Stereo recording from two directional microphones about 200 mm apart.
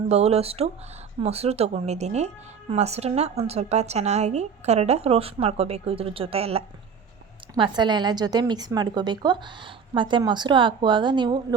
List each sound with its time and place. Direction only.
0.1 s a woman's voice: 30° right (ahead or behind)